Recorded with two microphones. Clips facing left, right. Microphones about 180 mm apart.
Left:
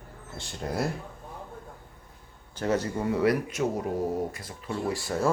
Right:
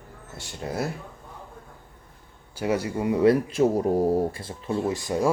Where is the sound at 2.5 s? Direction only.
10° right (ahead or behind).